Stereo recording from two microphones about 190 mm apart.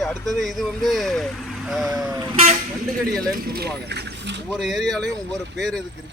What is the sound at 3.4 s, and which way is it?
Speech, 55° right (ahead or behind).